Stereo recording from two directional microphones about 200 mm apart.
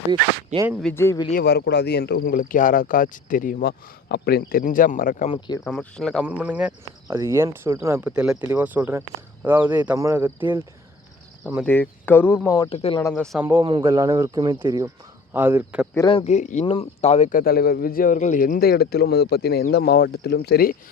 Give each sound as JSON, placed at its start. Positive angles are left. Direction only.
{"t": 0.1, "sound": "speech", "side_deg": -20}
{"t": 0.7, "sound": "speech", "side_deg": 0}
{"t": 0.9, "sound": "speech", "side_deg": 15}
{"t": 1.3, "sound": "speech", "side_deg": 50}
{"t": 5.6, "sound": "speech", "side_deg": 5}
{"t": 11.6, "sound": "speech", "side_deg": 10}
{"t": 12.7, "sound": "speech", "side_deg": 30}
{"t": 13.0, "sound": "speech", "side_deg": 15}
{"t": 13.4, "sound": "speech", "side_deg": -10}
{"t": 16.0, "sound": "speech", "side_deg": 25}